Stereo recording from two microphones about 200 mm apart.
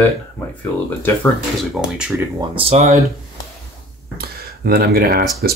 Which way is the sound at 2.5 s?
30° right (ahead or behind).